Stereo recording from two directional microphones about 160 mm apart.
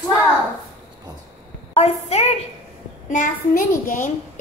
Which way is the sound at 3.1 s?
55° left (ahead or behind).